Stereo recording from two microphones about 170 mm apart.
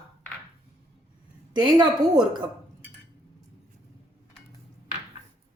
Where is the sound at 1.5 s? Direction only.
25° right (ahead or behind).